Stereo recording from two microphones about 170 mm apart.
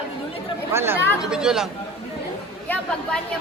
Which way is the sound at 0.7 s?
15° right (ahead or behind).